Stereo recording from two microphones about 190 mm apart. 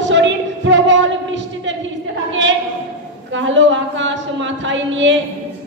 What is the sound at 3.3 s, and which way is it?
A woman's voice, 75° right (ahead or behind).